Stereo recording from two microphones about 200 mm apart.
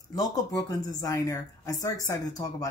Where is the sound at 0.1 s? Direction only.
20° left (ahead or behind).